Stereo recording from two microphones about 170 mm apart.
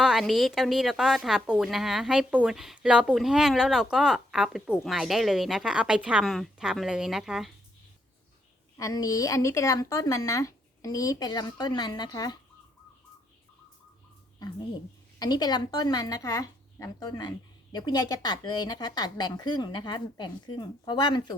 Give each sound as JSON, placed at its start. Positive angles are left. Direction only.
{"t": 0.0, "sound": "speech", "side_deg": 0}
{"t": 8.8, "sound": "speech", "side_deg": 20}
{"t": 15.2, "sound": "speech", "side_deg": 25}